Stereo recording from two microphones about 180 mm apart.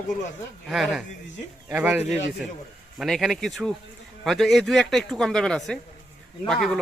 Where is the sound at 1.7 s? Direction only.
10° right (ahead or behind).